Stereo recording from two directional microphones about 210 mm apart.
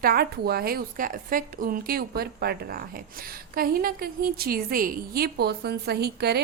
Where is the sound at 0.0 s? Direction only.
45° right (ahead or behind).